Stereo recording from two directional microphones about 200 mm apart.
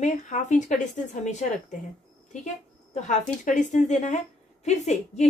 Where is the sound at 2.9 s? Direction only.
35° left (ahead or behind).